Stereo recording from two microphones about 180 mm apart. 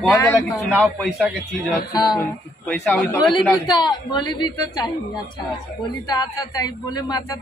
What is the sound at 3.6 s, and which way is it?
A man's voice, 25° left (ahead or behind).